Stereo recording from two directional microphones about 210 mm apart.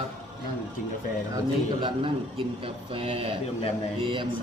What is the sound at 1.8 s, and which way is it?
A man's voice, 25° right (ahead or behind).